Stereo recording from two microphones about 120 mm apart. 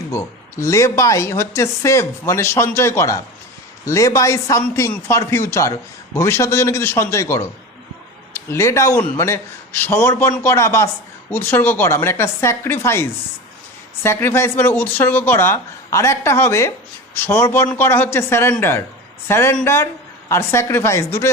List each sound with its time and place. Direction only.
0.1 s speech: 25° left (ahead or behind)